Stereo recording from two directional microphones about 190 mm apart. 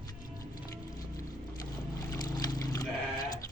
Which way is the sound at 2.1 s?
20° left (ahead or behind).